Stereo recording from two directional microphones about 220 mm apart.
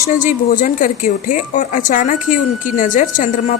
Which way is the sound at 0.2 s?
35° left (ahead or behind).